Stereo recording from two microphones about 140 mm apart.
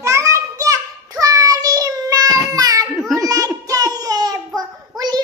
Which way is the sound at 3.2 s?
25° right (ahead or behind).